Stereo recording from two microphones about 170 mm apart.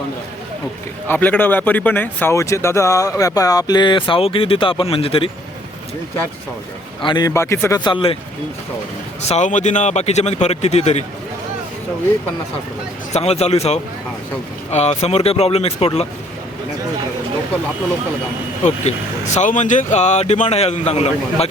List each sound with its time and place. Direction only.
1.0 s speech: 10° left (ahead or behind); by 5.3 s 35° left (ahead or behind)
7.0 s speech: 25° left (ahead or behind)
7.9 s speech: 30° left (ahead or behind)
9.3 s speech: 45° left (ahead or behind)
13.1 s speech: 40° left (ahead or behind)
18.6 s speech: 45° left (ahead or behind)